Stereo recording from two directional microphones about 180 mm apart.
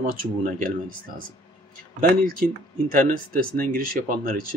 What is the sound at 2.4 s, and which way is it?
Speech, 50° right (ahead or behind).